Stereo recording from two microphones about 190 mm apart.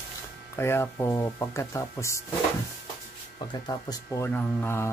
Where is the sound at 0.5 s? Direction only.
15° left (ahead or behind).